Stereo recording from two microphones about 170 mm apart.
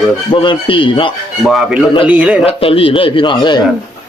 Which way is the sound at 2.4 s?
35° left (ahead or behind).